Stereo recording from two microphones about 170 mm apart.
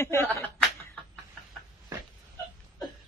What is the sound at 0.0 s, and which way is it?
Chuckle, 15° left (ahead or behind).